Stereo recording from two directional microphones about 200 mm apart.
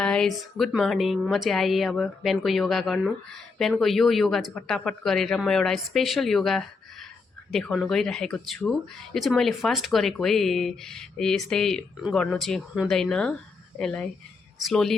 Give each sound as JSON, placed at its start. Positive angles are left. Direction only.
{"t": 0.0, "sound": "speech", "side_deg": 5}